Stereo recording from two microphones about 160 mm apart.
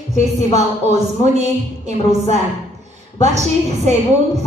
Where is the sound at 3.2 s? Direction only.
45° right (ahead or behind).